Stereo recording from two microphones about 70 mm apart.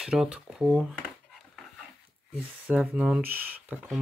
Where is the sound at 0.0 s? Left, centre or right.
Centre.